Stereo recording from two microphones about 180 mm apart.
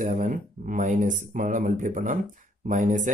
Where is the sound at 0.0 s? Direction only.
45° right (ahead or behind).